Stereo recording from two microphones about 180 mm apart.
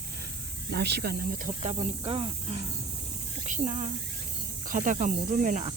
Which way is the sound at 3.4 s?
40° right (ahead or behind).